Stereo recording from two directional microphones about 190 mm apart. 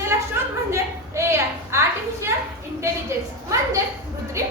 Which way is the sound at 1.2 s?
15° right (ahead or behind).